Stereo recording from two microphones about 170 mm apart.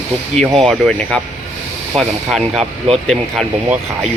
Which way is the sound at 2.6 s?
35° right (ahead or behind).